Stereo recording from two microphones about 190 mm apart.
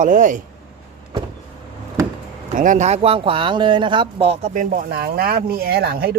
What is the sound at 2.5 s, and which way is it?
A man's voice, 45° right (ahead or behind).